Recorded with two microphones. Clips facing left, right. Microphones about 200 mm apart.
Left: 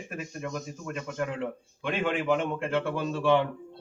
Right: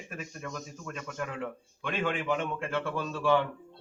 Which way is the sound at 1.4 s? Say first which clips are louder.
Left 4 dB; 20° left (ahead or behind).